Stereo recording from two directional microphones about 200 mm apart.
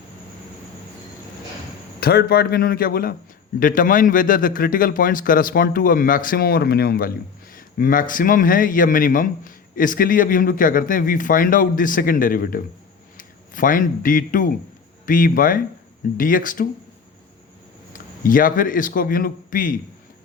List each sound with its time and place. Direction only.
2.0 s a man's voice: 50° left (ahead or behind)
17.9 s speech: 45° left (ahead or behind)